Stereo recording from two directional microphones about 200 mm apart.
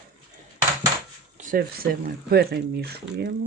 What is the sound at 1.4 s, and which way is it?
Speech, 45° right (ahead or behind).